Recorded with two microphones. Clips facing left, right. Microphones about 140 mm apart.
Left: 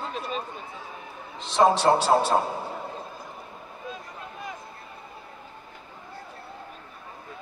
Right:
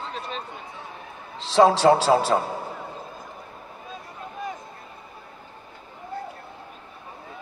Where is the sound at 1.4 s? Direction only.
90° right.